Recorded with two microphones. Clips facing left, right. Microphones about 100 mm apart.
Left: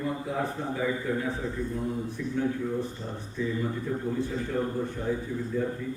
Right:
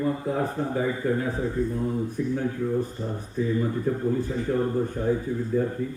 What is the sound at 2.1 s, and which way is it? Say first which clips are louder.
A man's voice: right 2 dB; 45° right (ahead or behind).